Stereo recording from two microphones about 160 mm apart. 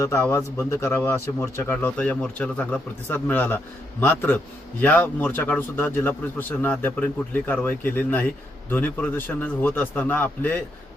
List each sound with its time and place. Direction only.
0.0 s speech: 20° left (ahead or behind)